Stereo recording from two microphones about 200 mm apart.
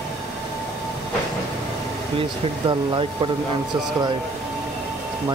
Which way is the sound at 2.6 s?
25° right (ahead or behind).